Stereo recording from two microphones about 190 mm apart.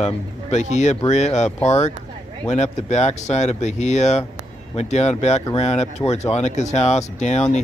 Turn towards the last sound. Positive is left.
turn(degrees=35)  # may be behind; listen again after turning